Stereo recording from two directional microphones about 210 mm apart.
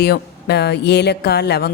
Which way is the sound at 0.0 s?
50° left (ahead or behind).